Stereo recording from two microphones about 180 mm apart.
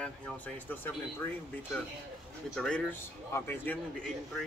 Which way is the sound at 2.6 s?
5° left (ahead or behind).